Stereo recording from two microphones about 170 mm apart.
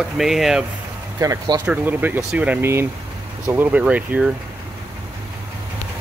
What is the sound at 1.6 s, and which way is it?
Speech, 10° right (ahead or behind).